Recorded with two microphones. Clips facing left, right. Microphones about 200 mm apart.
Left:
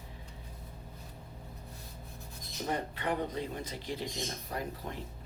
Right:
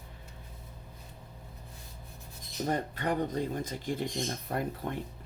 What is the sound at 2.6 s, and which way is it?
Speech, 45° right (ahead or behind).